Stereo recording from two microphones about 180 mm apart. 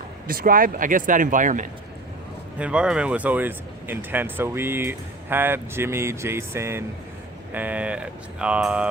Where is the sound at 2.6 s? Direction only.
5° right (ahead or behind).